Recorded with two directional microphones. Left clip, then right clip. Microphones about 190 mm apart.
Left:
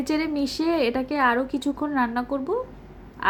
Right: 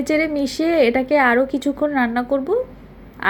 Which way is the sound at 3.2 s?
10° right (ahead or behind).